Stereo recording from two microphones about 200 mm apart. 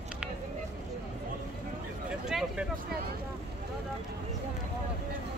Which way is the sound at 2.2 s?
5° right (ahead or behind).